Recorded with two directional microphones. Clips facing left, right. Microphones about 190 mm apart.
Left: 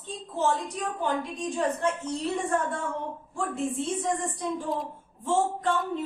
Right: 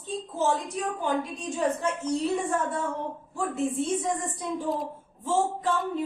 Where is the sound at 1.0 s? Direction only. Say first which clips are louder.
Left 1 dB; centre (ahead or behind).